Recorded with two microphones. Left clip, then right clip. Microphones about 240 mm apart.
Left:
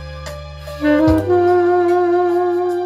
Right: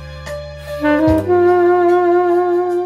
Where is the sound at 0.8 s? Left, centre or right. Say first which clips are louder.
Even; centre.